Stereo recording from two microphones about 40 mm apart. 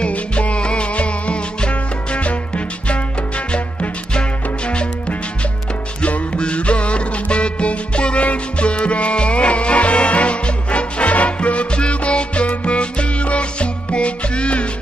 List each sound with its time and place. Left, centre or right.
0.0 s music: left